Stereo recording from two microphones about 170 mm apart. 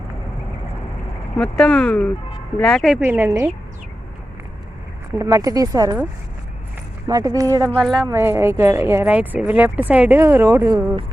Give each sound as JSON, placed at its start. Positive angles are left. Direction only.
{"t": 1.4, "sound": "speech", "side_deg": 5}
{"t": 3.0, "sound": "speech", "side_deg": -15}
{"t": 5.1, "sound": "speech", "side_deg": -20}
{"t": 7.1, "sound": "speech", "side_deg": -20}
{"t": 7.7, "sound": "speech", "side_deg": 5}
{"t": 8.0, "sound": "speech", "side_deg": -15}